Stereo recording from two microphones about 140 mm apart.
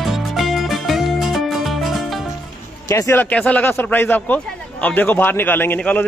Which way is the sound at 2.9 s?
20° left (ahead or behind).